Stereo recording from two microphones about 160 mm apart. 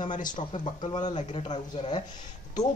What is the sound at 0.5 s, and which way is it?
Speech, 30° left (ahead or behind).